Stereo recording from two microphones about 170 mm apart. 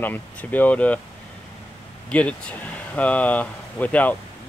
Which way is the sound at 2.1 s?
10° left (ahead or behind).